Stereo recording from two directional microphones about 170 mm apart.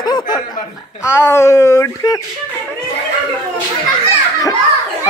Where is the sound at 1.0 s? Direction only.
15° left (ahead or behind).